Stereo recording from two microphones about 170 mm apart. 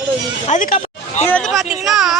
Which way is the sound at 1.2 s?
5° left (ahead or behind).